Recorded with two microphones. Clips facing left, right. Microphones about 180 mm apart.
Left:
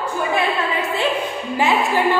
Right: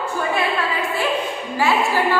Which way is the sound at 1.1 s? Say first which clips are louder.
Left 1 dB; 20° left (ahead or behind).